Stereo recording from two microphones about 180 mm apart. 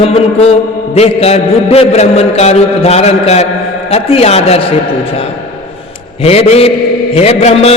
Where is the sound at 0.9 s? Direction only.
35° left (ahead or behind).